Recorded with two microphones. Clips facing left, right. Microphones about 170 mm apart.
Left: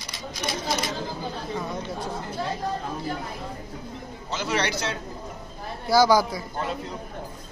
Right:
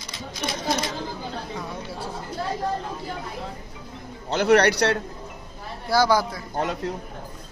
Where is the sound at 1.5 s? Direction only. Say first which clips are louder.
Left 2 dB; 5° right (ahead or behind).